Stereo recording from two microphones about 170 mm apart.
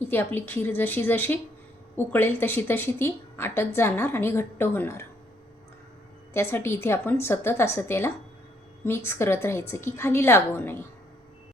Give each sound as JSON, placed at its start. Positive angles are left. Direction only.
{"t": 0.0, "sound": "a woman's voice", "side_deg": 10}
{"t": 6.3, "sound": "a woman's voice", "side_deg": 15}